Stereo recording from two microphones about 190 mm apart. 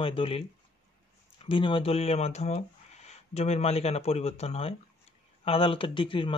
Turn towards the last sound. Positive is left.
turn(degrees=25)  # may be behind; listen again after turning